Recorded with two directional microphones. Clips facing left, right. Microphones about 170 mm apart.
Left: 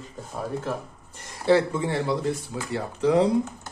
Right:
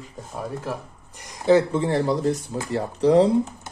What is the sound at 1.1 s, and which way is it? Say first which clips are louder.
Speech: right 3 dB; 15° right (ahead or behind).